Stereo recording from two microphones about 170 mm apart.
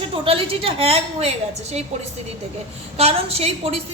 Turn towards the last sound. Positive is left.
turn(degrees=-35)  # may be behind; listen again after turning